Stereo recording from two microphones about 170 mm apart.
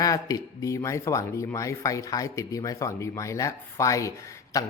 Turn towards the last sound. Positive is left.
turn(degrees=20)  # may be behind; listen again after turning